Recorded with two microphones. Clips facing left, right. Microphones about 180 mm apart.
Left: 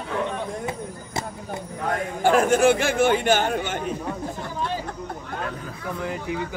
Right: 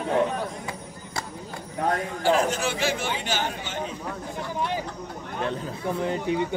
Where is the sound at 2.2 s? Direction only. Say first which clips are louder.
Left 6 dB; 55° left (ahead or behind).